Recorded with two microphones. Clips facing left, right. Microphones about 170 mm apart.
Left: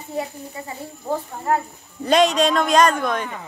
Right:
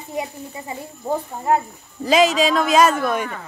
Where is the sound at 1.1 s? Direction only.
30° right (ahead or behind).